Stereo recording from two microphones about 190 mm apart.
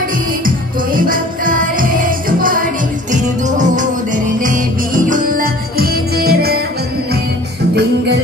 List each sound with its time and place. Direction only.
0.9 s music: 45° right (ahead or behind)